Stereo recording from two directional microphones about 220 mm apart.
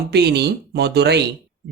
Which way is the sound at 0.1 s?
50° right (ahead or behind).